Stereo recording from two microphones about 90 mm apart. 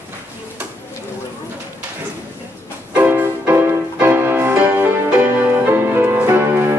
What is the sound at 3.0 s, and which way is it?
Music, 25° right (ahead or behind).